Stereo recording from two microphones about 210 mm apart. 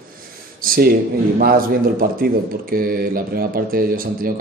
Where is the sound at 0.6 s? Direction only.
45° right (ahead or behind).